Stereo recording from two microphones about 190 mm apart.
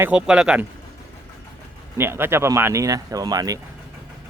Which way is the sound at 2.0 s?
10° right (ahead or behind).